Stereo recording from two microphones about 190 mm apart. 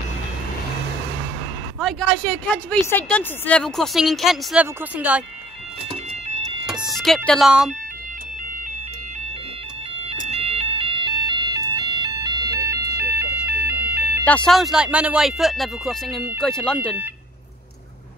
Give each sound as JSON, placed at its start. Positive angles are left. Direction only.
{"t": 1.8, "sound": "a woman's voice", "side_deg": 0}
{"t": 6.6, "sound": "a sound", "side_deg": -5}
{"t": 7.2, "sound": "a woman's voice", "side_deg": 0}
{"t": 10.0, "sound": "siren", "side_deg": -35}
{"t": 13.8, "sound": "a sound", "side_deg": -10}
{"t": 14.2, "sound": "a woman's voice", "side_deg": 5}